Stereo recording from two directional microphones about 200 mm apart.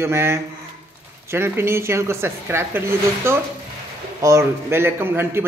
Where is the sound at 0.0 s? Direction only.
15° right (ahead or behind).